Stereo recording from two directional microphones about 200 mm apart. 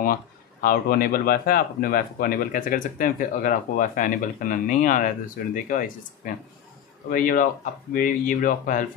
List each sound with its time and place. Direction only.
0.0 s speech: 45° left (ahead or behind)